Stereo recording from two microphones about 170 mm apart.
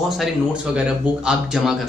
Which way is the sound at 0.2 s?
5° right (ahead or behind).